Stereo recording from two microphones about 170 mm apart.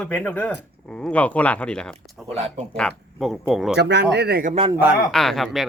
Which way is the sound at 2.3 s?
40° right (ahead or behind).